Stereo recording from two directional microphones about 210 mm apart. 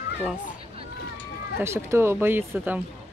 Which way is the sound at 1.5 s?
10° right (ahead or behind).